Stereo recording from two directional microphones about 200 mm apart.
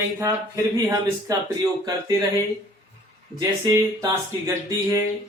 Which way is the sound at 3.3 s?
15° right (ahead or behind).